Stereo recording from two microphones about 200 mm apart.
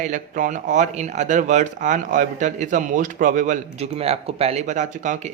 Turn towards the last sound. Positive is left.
turn(degrees=-40)  # may be behind; listen again after turning